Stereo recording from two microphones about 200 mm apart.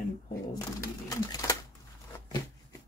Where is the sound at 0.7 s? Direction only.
15° left (ahead or behind).